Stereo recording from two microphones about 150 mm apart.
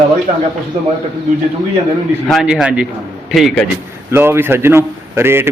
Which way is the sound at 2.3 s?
Centre (ahead or behind).